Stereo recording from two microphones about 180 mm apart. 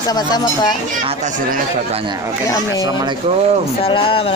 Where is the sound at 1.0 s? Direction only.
40° right (ahead or behind).